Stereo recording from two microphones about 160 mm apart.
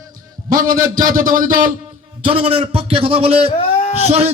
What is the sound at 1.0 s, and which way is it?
Speech, 55° right (ahead or behind).